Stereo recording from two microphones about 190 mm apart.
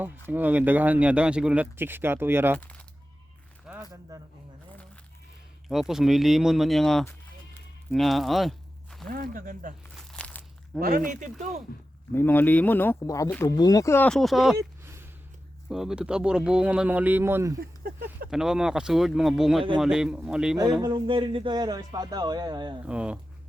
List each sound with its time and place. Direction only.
0.0 s speech: 10° right (ahead or behind)
2.6 s speech: 5° left (ahead or behind)
3.7 s zipper: 5° right (ahead or behind)
5.6 s speech: centre (ahead or behind)
7.9 s a sound: centre (ahead or behind)
9.0 s speech: 50° right (ahead or behind)
10.1 s a sound: 5° left (ahead or behind)
10.8 s speech: 45° right (ahead or behind)
12.1 s speech: 10° left (ahead or behind)
14.5 s a sound: 15° right (ahead or behind)
15.7 s speech: 5° right (ahead or behind)
18.0 s speech: 5° right (ahead or behind)
20.8 s speech: 25° right (ahead or behind)
22.9 s speech: 5° right (ahead or behind)